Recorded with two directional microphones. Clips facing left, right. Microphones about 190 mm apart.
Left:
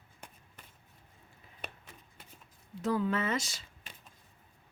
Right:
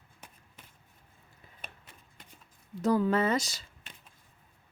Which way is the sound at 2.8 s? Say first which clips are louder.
Right 5 dB; 40° right (ahead or behind).